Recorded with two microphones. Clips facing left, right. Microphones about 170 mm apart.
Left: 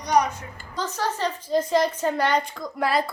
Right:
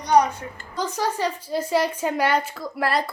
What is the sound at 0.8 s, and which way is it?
A woman's voice, 10° right (ahead or behind).